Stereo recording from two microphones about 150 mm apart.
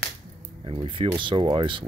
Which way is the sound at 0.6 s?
35° right (ahead or behind).